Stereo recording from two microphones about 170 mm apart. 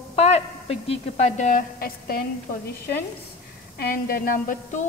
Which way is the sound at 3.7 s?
65° left (ahead or behind).